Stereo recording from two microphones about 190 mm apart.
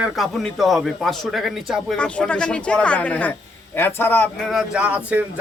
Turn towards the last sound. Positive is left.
turn(degrees=-5)  # may be behind; listen again after turning